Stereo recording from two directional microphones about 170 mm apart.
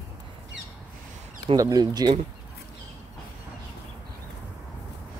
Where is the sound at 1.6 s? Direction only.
20° right (ahead or behind).